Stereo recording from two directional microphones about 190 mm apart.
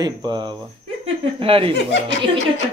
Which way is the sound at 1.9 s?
65° left (ahead or behind).